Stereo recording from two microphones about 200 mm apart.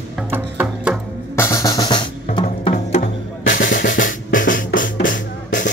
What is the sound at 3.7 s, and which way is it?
Drum, 65° left (ahead or behind).